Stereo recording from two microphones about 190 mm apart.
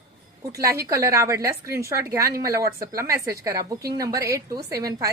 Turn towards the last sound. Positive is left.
turn(degrees=-20)  # may be behind; listen again after turning